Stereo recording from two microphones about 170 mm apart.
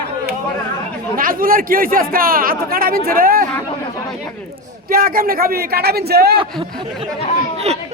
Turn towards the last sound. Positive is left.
turn(degrees=-40)  # may be behind; listen again after turning